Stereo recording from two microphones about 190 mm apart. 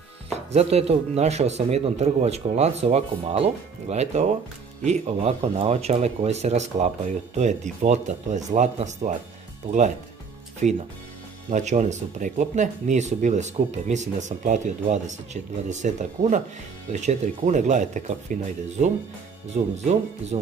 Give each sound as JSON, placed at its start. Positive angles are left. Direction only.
{"t": 0.5, "sound": "speech", "side_deg": -35}